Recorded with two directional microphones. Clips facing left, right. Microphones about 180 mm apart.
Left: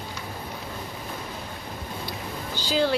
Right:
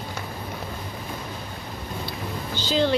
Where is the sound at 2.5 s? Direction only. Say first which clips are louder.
Right 1 dB; 10° left (ahead or behind).